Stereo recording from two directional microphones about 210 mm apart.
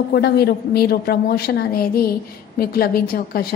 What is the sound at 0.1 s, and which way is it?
A woman's voice, 50° left (ahead or behind).